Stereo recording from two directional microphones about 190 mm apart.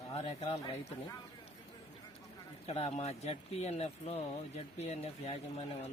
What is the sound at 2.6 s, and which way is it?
Speech, 35° left (ahead or behind).